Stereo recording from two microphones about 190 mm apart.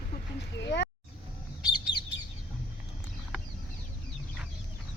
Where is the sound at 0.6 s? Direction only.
65° left (ahead or behind).